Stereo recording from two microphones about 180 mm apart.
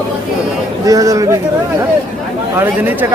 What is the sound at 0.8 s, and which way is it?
Speech, 20° right (ahead or behind).